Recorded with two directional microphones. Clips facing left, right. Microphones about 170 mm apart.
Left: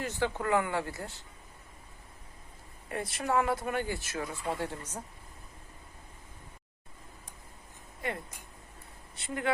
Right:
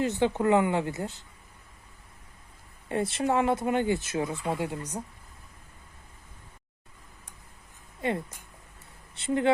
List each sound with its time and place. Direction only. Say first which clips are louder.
0.0 s speech: right 7 dB; 20° right (ahead or behind)
2.9 s speech: right 4 dB; 25° right (ahead or behind)
9.1 s speech: right 9 dB; 25° right (ahead or behind)